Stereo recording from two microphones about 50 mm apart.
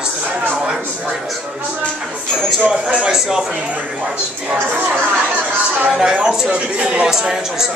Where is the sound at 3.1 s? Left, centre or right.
Centre.